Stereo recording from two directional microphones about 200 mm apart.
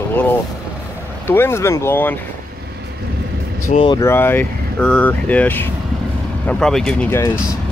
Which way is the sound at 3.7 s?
25° left (ahead or behind).